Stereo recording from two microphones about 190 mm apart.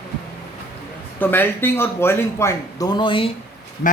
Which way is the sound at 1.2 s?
10° left (ahead or behind).